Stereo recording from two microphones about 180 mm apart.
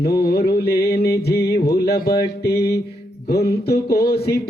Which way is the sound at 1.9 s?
60° left (ahead or behind).